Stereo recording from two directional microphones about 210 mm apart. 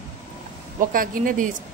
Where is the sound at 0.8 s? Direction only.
40° right (ahead or behind).